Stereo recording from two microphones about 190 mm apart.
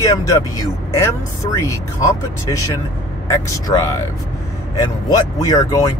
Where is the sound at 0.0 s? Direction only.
15° left (ahead or behind).